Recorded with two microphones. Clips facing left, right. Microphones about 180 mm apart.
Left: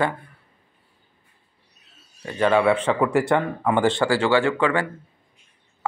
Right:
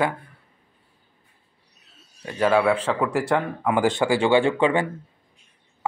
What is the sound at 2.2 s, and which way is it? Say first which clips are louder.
Speech: left 1 dB; 5° right (ahead or behind).